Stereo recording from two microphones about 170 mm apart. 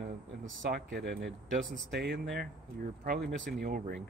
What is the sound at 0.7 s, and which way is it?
Speech, 65° right (ahead or behind).